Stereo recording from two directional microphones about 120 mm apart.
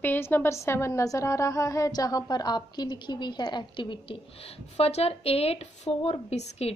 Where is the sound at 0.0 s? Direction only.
15° left (ahead or behind).